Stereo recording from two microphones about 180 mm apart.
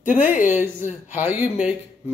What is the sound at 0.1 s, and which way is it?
Speech, 45° left (ahead or behind).